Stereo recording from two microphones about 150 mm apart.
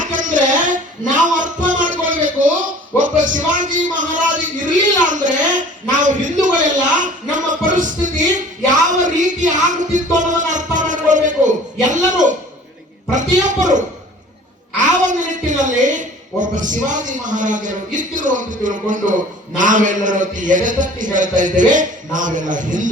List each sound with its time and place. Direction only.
0.0 s music: 60° right (ahead or behind)
14.8 s a woman's voice: 55° right (ahead or behind)